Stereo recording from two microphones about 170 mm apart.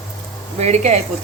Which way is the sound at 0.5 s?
40° right (ahead or behind).